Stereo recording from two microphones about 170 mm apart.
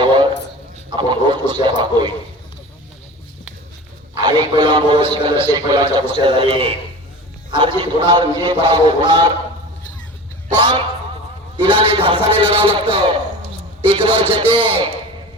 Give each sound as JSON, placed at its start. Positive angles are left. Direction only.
{"t": 0.0, "sound": "a sound", "side_deg": -30}
{"t": 1.6, "sound": "a man's voice", "side_deg": -25}
{"t": 4.2, "sound": "a man's voice", "side_deg": -25}
{"t": 11.5, "sound": "a man's voice", "side_deg": -30}